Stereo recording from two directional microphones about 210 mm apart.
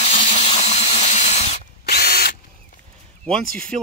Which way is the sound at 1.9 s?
50° left (ahead or behind).